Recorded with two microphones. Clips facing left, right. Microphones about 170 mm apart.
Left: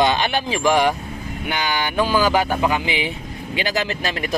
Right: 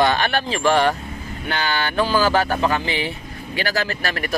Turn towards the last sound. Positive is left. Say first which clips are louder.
# left 1 dB
turn(degrees=20)  # may be behind; listen again after turning